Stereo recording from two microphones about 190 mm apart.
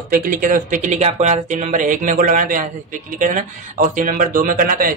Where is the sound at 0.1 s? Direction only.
45° right (ahead or behind).